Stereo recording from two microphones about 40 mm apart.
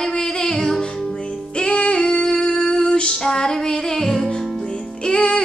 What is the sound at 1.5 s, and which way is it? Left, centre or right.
Female singing, left.